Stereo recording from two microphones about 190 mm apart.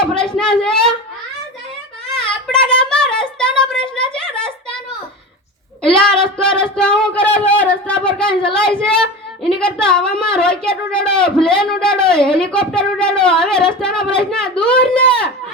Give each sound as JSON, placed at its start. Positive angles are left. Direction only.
{"t": 0.0, "sound": "speech", "side_deg": 5}
{"t": 2.5, "sound": "a sound", "side_deg": 5}
{"t": 5.8, "sound": "speech", "side_deg": 5}